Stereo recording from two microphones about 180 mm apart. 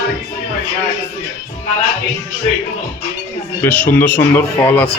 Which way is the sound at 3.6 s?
10° left (ahead or behind).